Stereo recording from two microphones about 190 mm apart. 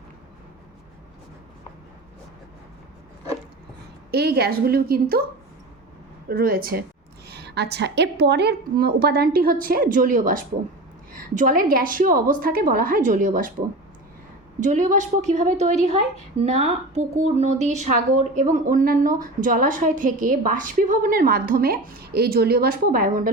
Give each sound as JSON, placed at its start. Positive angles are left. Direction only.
{"t": 4.1, "sound": "a woman's voice", "side_deg": -55}
{"t": 6.2, "sound": "a woman's voice", "side_deg": -50}
{"t": 7.3, "sound": "a woman's voice", "side_deg": -60}
{"t": 14.6, "sound": "a woman's voice", "side_deg": -40}